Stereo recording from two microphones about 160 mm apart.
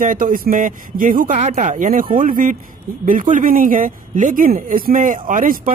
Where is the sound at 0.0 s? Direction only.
60° right (ahead or behind).